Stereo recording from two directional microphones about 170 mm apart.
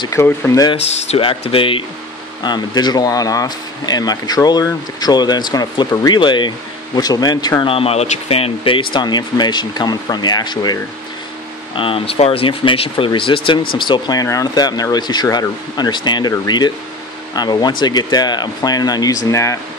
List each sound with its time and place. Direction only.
0.0 s speech: 15° left (ahead or behind)
1.1 s speech: 35° left (ahead or behind)